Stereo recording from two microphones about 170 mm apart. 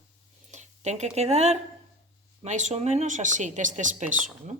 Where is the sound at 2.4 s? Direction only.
45° right (ahead or behind).